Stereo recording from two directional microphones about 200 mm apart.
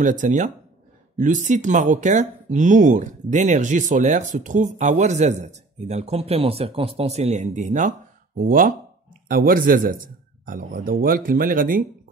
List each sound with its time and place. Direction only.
0.0 s a man's voice: 40° right (ahead or behind)